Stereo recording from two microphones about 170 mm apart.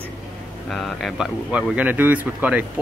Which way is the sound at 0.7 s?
Centre (ahead or behind).